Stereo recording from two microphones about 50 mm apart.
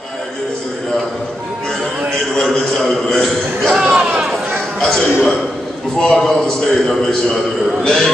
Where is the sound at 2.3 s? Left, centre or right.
Centre.